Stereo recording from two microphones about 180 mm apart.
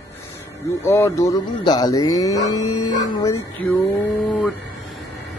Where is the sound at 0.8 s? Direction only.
15° left (ahead or behind).